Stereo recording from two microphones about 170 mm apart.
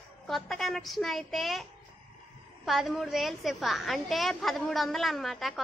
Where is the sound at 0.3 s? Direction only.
Centre (ahead or behind).